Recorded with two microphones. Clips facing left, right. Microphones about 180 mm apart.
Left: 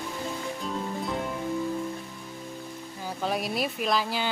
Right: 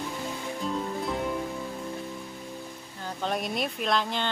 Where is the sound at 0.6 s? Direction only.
Centre (ahead or behind).